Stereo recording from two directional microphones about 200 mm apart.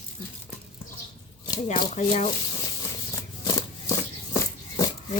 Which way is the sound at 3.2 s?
20° left (ahead or behind).